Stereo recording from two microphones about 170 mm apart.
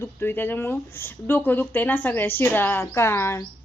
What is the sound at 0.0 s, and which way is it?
Speech, 15° left (ahead or behind).